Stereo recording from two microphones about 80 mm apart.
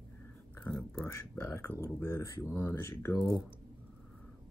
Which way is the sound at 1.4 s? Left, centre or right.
Left.